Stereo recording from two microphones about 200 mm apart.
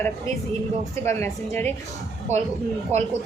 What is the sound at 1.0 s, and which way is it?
Speech, 10° left (ahead or behind).